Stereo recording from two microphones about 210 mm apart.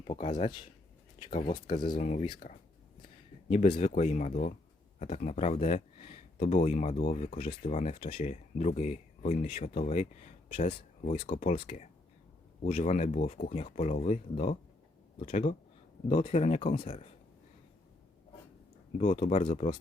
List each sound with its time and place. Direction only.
0.1 s speech: 30° left (ahead or behind)
18.9 s speech: 35° left (ahead or behind)